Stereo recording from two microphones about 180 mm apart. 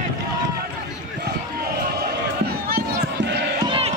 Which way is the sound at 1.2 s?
60° right (ahead or behind).